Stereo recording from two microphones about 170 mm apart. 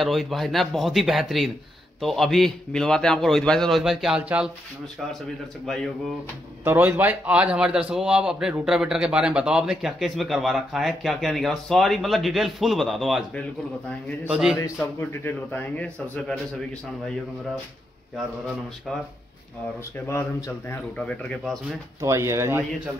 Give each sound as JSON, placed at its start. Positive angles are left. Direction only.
{"t": 0.0, "sound": "a man's voice", "side_deg": 0}
{"t": 6.6, "sound": "a man's voice", "side_deg": -10}
{"t": 14.8, "sound": "speech", "side_deg": 10}
{"t": 20.1, "sound": "speech", "side_deg": 15}
{"t": 21.0, "sound": "a man's voice", "side_deg": 5}
{"t": 22.0, "sound": "speech", "side_deg": -15}